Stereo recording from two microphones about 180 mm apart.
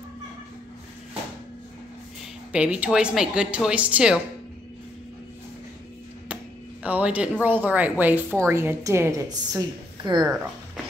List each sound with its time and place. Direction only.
2.5 s speech: 5° right (ahead or behind)
6.8 s speech: 10° right (ahead or behind); by 10.3 s 25° right (ahead or behind)